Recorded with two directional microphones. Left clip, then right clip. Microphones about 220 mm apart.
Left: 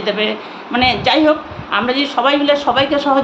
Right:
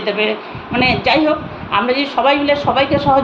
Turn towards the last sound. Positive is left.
turn(degrees=15)  # may be behind; listen again after turning